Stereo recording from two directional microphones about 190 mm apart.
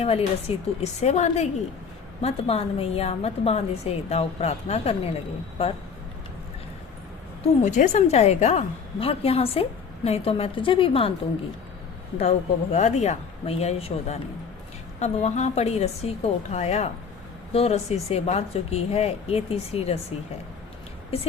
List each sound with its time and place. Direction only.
0.0 s a woman's voice: 30° left (ahead or behind)
7.4 s a woman's voice: 40° left (ahead or behind)
12.7 s a woman's voice: 35° left (ahead or behind)